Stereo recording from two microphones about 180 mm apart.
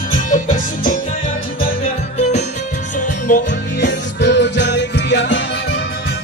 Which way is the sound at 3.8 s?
75° left (ahead or behind).